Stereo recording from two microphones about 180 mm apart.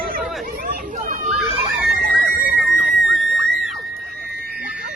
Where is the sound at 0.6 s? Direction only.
45° right (ahead or behind).